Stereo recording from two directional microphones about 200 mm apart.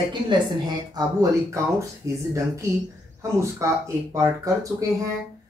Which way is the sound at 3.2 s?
15° right (ahead or behind).